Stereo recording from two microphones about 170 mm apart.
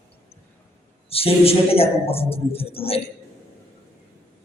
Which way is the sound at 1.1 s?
35° left (ahead or behind).